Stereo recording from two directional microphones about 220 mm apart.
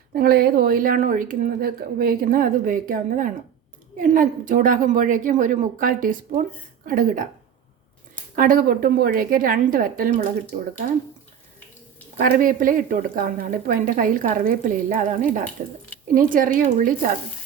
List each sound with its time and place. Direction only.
0.1 s a woman's voice: 45° right (ahead or behind)
8.4 s a woman's voice: 40° right (ahead or behind)
12.1 s a woman's voice: 40° right (ahead or behind)